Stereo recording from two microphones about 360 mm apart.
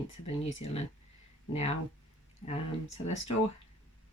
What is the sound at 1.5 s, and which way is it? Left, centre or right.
Speech, centre.